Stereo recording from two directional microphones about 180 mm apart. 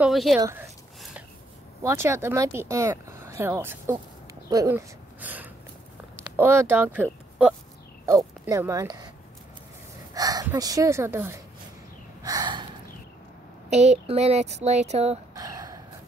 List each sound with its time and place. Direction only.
0.0 s speech: centre (ahead or behind)
1.8 s speech: 15° right (ahead or behind)
4.5 s a sound: 15° right (ahead or behind)
6.1 s speech: 10° right (ahead or behind)
8.0 s speech: 15° right (ahead or behind)
10.1 s speech: 20° right (ahead or behind)
12.2 s gasp: 20° right (ahead or behind)
13.7 s speech: 35° right (ahead or behind)
15.3 s a sound: 20° right (ahead or behind)